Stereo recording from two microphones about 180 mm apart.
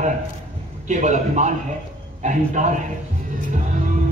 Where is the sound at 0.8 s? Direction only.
40° right (ahead or behind).